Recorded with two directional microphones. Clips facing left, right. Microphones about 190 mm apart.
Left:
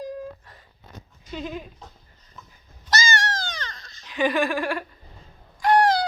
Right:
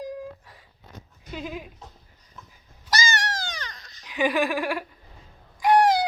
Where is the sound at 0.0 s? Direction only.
15° right (ahead or behind).